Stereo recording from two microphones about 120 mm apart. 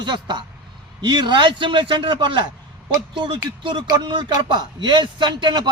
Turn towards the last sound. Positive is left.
turn(degrees=-40)  # may be behind; listen again after turning